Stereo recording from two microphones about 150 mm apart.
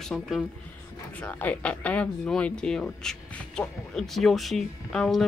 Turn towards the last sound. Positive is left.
turn(degrees=5)  # may be behind; listen again after turning